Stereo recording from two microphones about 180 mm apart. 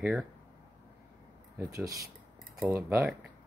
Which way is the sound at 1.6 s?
15° right (ahead or behind).